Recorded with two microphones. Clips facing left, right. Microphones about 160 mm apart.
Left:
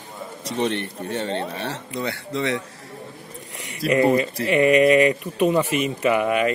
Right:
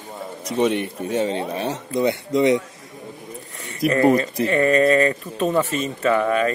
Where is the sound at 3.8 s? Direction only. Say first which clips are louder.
Right 1 dB; 20° right (ahead or behind).